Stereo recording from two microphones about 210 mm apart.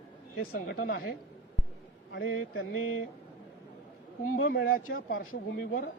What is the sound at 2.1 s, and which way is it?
Speech, 65° left (ahead or behind).